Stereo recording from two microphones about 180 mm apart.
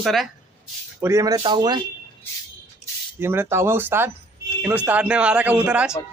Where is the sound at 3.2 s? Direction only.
15° right (ahead or behind).